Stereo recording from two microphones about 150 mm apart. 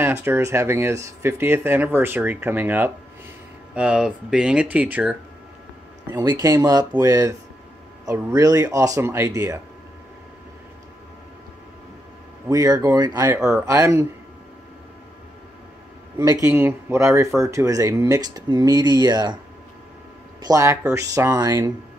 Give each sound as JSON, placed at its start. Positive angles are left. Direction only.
{"t": 0.0, "sound": "speech", "side_deg": -15}
{"t": 6.1, "sound": "speech", "side_deg": -25}
{"t": 12.4, "sound": "speech", "side_deg": -25}
{"t": 16.2, "sound": "speech", "side_deg": -20}
{"t": 20.4, "sound": "speech", "side_deg": -20}